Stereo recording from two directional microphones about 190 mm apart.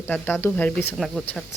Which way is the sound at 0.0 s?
10° left (ahead or behind).